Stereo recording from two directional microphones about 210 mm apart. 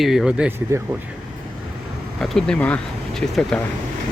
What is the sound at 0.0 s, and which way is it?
Speech, centre (ahead or behind).